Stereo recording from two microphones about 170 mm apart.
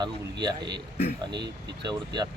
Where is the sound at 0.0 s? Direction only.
25° right (ahead or behind).